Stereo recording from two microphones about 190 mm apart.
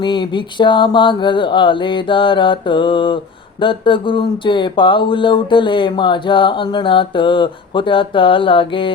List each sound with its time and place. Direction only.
0.0 s speech: 25° left (ahead or behind)